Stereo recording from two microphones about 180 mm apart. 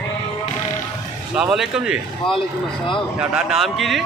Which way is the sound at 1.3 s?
5° right (ahead or behind).